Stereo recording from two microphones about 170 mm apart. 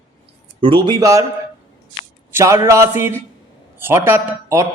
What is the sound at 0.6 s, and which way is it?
Speech, 25° right (ahead or behind).